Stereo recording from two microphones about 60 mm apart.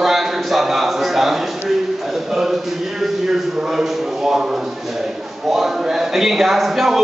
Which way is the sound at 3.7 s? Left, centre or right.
Centre.